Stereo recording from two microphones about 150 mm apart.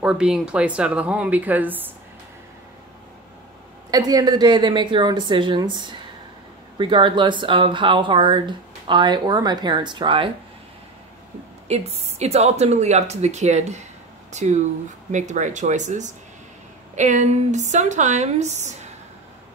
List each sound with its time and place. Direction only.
0.0 s speech: 5° right (ahead or behind)
3.9 s speech: 25° right (ahead or behind)
11.6 s speech: 45° right (ahead or behind)